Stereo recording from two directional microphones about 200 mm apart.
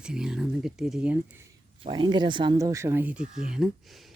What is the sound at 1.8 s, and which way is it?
Speech, 25° right (ahead or behind).